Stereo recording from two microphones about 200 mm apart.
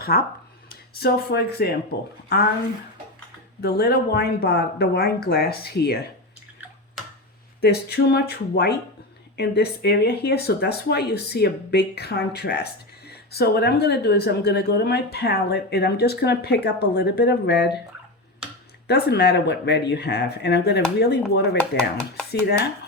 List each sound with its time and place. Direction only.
0.0 s speech: 50° left (ahead or behind)
3.6 s speech: 55° left (ahead or behind)
7.6 s speech: 55° left (ahead or behind)
18.9 s speech: 55° left (ahead or behind)